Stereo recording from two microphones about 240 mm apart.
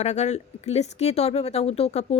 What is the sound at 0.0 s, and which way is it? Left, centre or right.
Speech, left.